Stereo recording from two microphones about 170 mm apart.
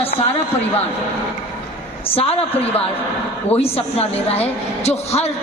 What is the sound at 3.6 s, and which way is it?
A woman's voice, 35° left (ahead or behind).